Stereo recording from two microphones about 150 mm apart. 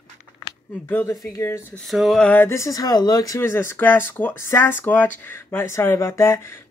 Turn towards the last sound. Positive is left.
turn(degrees=20)  # may be behind; listen again after turning